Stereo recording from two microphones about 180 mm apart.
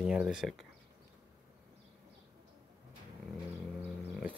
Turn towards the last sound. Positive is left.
turn(degrees=-5)  # may be behind; listen again after turning